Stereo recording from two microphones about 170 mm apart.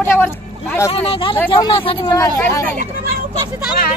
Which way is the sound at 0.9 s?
35° left (ahead or behind).